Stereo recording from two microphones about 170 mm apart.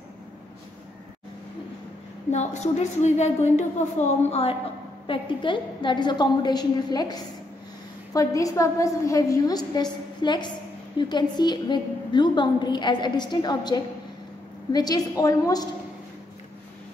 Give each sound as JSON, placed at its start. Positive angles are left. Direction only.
{"t": 2.3, "sound": "a woman's voice", "side_deg": 40}